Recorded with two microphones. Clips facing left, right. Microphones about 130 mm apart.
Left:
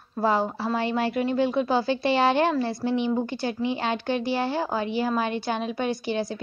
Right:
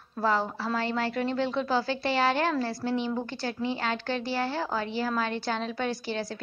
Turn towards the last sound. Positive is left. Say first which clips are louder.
# left 5 dB
turn(degrees=15)  # may be behind; listen again after turning